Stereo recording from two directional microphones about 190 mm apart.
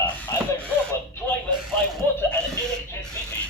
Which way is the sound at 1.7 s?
10° left (ahead or behind).